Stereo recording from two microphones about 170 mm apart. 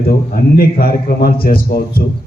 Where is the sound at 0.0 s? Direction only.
60° left (ahead or behind).